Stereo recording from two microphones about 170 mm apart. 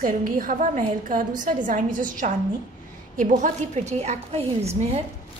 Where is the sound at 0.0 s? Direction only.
50° right (ahead or behind).